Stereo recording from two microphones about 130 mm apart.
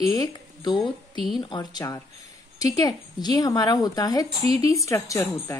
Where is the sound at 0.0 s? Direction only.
30° left (ahead or behind).